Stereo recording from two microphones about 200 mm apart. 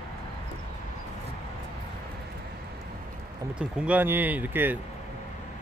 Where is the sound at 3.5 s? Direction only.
5° right (ahead or behind).